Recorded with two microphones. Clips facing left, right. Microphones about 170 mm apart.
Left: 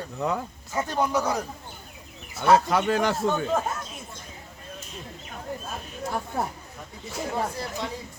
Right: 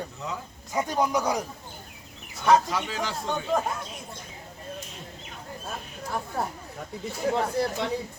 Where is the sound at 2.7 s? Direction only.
60° left (ahead or behind).